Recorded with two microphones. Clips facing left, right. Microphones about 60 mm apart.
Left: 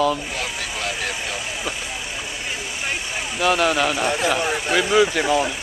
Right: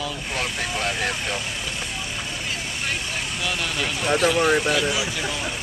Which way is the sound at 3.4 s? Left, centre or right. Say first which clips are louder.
Left 10 dB; left.